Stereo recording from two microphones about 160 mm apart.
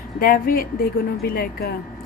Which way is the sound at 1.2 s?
75° left (ahead or behind).